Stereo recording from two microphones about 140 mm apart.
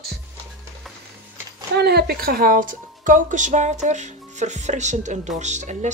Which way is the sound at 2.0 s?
90° right.